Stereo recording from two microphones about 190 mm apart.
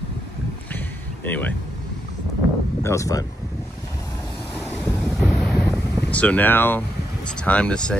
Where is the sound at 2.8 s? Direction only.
15° left (ahead or behind).